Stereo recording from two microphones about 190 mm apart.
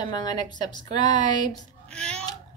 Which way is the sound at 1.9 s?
5° left (ahead or behind).